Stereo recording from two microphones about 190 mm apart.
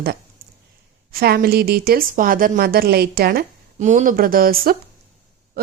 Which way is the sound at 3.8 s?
40° right (ahead or behind).